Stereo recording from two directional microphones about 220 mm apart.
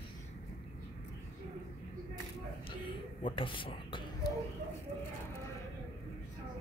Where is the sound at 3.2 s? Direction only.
25° left (ahead or behind).